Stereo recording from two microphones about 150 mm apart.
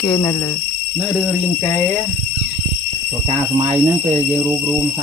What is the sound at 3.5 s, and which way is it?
Speech, 40° right (ahead or behind).